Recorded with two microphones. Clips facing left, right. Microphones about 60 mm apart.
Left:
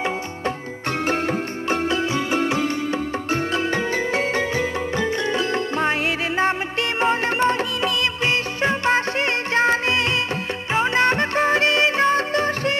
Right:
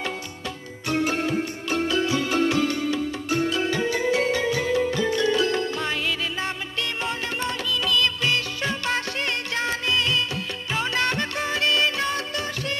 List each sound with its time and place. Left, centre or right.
0.8 s music: left
3.5 s music: left